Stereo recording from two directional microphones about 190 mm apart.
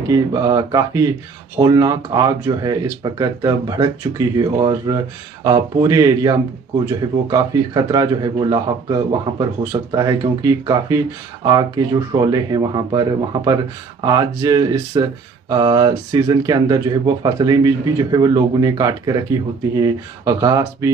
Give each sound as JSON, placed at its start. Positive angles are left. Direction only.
{"t": 0.1, "sound": "speech", "side_deg": -20}